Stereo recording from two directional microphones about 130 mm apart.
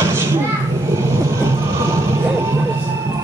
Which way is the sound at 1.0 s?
20° right (ahead or behind).